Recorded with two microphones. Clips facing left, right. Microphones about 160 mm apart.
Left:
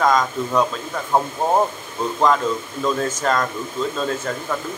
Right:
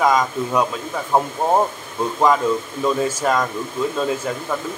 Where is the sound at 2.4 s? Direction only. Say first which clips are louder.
Right 2 dB; 10° right (ahead or behind).